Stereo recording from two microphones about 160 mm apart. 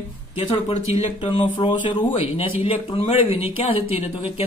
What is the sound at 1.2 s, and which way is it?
Speech, 35° left (ahead or behind).